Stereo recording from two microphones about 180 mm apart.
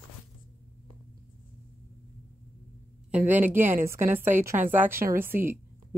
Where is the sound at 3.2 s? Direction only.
10° right (ahead or behind).